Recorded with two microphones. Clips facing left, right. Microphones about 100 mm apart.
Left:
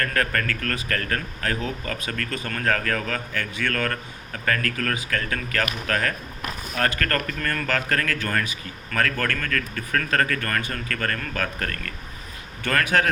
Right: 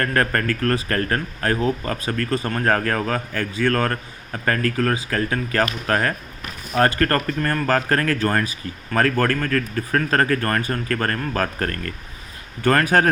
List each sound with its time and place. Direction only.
0.0 s speech: 35° right (ahead or behind)